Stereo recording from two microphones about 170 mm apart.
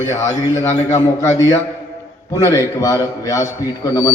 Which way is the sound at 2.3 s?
15° left (ahead or behind).